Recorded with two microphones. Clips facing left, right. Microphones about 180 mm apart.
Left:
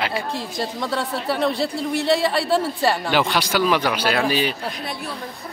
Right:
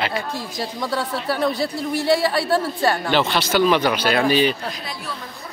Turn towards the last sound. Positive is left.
turn(degrees=5)  # may be behind; listen again after turning